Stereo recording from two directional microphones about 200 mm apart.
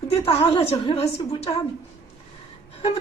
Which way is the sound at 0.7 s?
25° left (ahead or behind).